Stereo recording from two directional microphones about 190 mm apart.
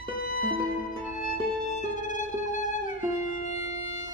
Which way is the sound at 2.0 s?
40° left (ahead or behind).